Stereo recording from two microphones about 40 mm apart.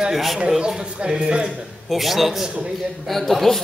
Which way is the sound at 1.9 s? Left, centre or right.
Centre.